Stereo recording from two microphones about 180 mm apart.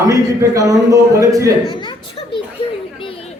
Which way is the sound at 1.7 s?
25° left (ahead or behind).